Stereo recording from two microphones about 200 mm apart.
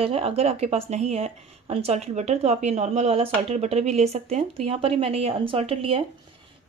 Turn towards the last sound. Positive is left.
turn(degrees=-30)  # may be behind; listen again after turning